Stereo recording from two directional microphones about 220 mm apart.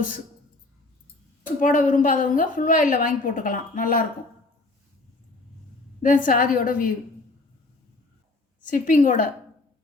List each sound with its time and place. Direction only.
1.5 s a woman's voice: 35° left (ahead or behind)
6.0 s a woman's voice: 35° left (ahead or behind)
8.6 s a woman's voice: 35° left (ahead or behind)